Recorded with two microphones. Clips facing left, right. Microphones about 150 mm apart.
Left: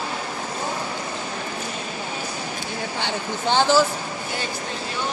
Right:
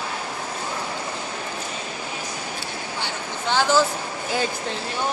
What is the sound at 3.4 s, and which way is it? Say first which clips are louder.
Speech: left 2 dB; 25° left (ahead or behind).